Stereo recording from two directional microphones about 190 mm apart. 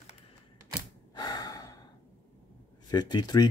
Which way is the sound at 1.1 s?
20° left (ahead or behind).